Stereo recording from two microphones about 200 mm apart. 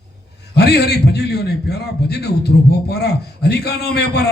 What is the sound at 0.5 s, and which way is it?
A man's voice, 55° left (ahead or behind).